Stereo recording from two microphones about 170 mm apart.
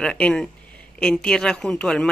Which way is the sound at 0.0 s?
5° left (ahead or behind).